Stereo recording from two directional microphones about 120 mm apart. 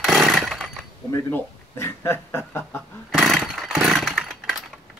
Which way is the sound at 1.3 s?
20° left (ahead or behind).